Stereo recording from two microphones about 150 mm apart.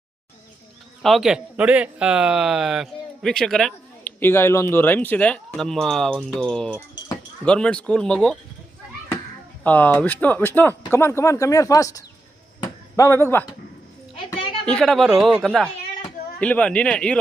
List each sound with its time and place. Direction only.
1.0 s a man's voice: centre (ahead or behind)
4.2 s speech: 15° left (ahead or behind)
9.6 s speech: 10° left (ahead or behind)
12.5 s a sound: 20° left (ahead or behind)
14.6 s a man's voice: 5° left (ahead or behind)
16.4 s speech: 10° left (ahead or behind)